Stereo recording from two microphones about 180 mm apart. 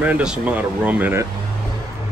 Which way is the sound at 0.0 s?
5° right (ahead or behind).